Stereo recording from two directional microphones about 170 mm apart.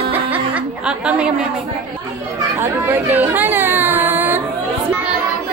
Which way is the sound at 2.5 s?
15° right (ahead or behind).